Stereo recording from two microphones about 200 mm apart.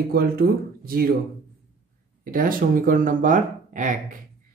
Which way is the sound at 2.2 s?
45° right (ahead or behind).